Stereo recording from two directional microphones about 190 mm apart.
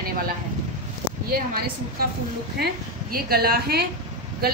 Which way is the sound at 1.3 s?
50° right (ahead or behind).